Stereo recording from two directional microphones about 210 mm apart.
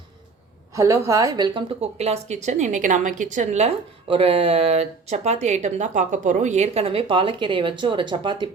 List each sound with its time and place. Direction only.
0.7 s a woman's voice: 15° right (ahead or behind)